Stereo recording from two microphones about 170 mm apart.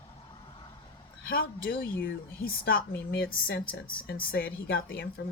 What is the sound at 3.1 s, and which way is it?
Speech, 65° left (ahead or behind).